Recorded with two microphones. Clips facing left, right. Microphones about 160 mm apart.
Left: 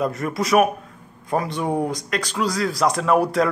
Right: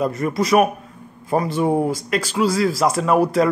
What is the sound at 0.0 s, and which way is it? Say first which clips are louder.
A man's voice: right 3 dB; centre (ahead or behind).